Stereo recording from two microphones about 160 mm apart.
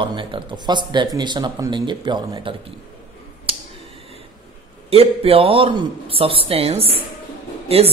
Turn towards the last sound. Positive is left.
turn(degrees=-40)  # may be behind; listen again after turning